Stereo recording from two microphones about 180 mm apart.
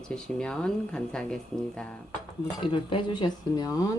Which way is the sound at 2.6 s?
30° left (ahead or behind).